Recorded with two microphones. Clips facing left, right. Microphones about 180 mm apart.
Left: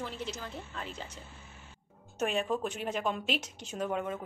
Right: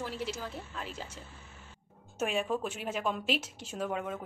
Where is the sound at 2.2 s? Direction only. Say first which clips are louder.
Left 1 dB; 5° right (ahead or behind).